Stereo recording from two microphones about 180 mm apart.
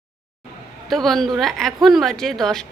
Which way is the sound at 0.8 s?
Centre (ahead or behind).